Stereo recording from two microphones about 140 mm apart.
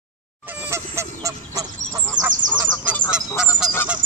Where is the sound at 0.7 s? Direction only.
20° right (ahead or behind).